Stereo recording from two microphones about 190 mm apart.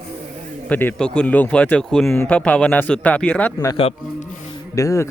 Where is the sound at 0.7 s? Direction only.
10° left (ahead or behind).